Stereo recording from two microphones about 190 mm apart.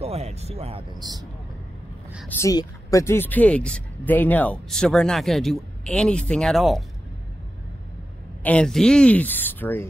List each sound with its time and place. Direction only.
0.0 s speech: 35° right (ahead or behind)
2.2 s speech: 15° left (ahead or behind); by 6.8 s centre (ahead or behind)
8.4 s a woman's voice: 5° left (ahead or behind)